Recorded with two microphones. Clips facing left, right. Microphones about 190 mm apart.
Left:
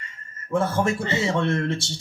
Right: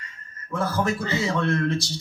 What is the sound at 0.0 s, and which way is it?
A man's voice, 25° left (ahead or behind).